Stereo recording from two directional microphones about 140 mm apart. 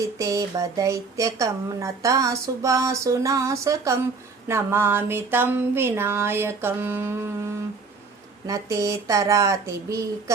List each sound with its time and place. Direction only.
0.0 s speech: 20° right (ahead or behind)